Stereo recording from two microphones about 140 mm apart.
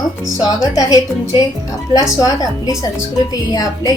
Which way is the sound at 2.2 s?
25° left (ahead or behind).